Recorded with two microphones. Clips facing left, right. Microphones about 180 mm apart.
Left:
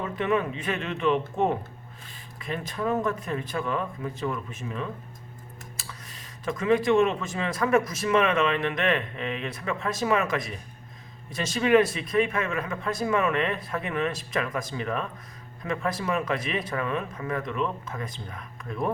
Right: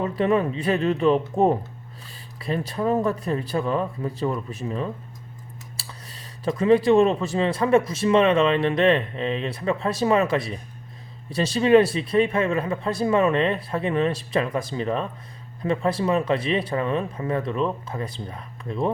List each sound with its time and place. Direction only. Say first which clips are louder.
0.0 s speech: right 5 dB; 35° right (ahead or behind)